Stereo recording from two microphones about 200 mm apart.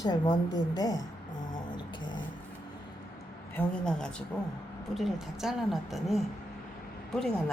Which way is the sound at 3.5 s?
5° left (ahead or behind).